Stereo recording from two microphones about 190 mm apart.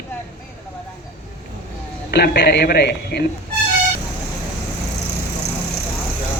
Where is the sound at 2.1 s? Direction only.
55° left (ahead or behind).